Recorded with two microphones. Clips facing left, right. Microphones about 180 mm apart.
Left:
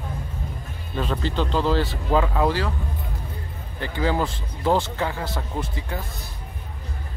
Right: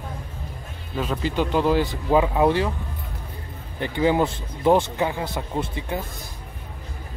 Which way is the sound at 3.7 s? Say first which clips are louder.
Right 4 dB; 20° right (ahead or behind).